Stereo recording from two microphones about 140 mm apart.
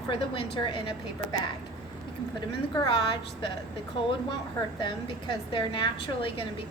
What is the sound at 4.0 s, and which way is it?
A woman's voice, 40° left (ahead or behind).